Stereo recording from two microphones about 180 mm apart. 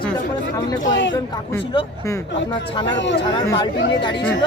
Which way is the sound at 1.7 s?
25° left (ahead or behind).